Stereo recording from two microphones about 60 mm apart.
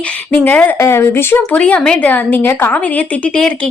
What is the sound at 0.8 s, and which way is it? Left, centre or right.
Speech, left.